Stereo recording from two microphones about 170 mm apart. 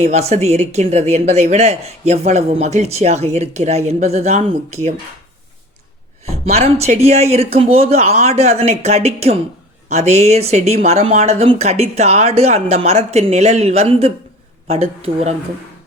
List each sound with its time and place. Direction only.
0.0 s speech: 40° right (ahead or behind)
6.2 s speech: 40° right (ahead or behind)